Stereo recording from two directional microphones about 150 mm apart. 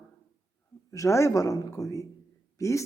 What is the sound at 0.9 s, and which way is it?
Speech, 20° left (ahead or behind).